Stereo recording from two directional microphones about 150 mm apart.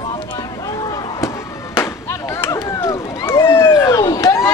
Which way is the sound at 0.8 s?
25° left (ahead or behind).